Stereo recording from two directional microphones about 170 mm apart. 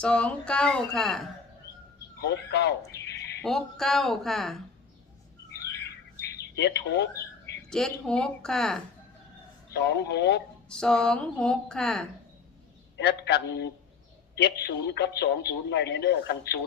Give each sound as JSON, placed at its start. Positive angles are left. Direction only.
{"t": 0.0, "sound": "a woman's voice", "side_deg": 5}
{"t": 2.2, "sound": "speech", "side_deg": 80}
{"t": 3.4, "sound": "a woman's voice", "side_deg": 0}
{"t": 6.6, "sound": "a man's voice", "side_deg": 80}
{"t": 7.7, "sound": "a woman's voice", "side_deg": 5}
{"t": 9.8, "sound": "a man's voice", "side_deg": 85}
{"t": 10.7, "sound": "a woman's voice", "side_deg": 5}
{"t": 13.0, "sound": "a man's voice", "side_deg": 75}